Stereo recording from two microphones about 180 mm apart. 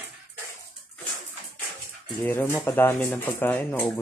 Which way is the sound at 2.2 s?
15° left (ahead or behind).